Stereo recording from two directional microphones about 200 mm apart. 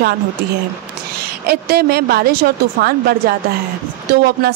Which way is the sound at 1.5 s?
50° right (ahead or behind).